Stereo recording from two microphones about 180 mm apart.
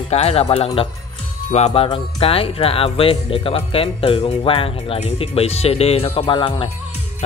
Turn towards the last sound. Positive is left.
turn(degrees=30)  # may be behind; listen again after turning